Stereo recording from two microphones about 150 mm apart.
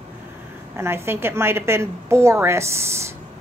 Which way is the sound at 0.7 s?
15° right (ahead or behind).